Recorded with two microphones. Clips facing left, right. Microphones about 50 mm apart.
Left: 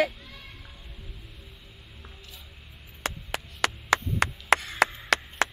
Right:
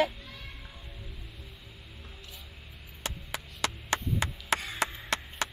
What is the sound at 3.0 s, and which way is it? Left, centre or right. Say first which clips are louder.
Chop: left 5 dB; left.